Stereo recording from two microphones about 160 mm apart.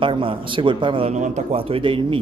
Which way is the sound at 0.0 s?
35° right (ahead or behind).